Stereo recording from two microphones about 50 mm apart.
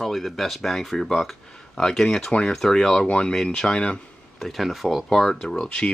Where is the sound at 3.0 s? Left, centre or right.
Left.